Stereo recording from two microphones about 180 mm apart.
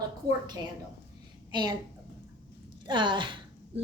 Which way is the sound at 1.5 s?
25° right (ahead or behind).